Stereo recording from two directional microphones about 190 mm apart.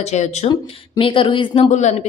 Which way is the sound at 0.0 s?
35° left (ahead or behind).